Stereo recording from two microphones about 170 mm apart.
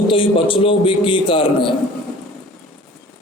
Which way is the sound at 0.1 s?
30° left (ahead or behind).